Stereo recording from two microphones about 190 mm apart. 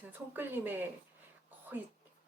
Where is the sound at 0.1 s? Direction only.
10° right (ahead or behind).